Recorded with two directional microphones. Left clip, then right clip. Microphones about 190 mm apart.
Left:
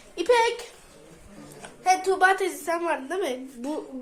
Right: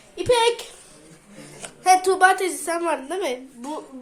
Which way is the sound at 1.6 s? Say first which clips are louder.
Right 6 dB; 25° right (ahead or behind).